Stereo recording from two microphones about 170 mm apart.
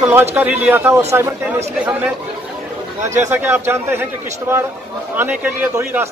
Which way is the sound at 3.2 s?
15° right (ahead or behind).